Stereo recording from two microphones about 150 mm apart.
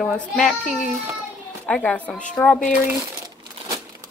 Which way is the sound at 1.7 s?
10° left (ahead or behind).